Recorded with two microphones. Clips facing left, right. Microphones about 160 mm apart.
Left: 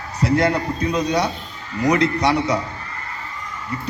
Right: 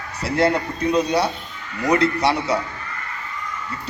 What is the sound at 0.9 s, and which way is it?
Speech, 5° right (ahead or behind).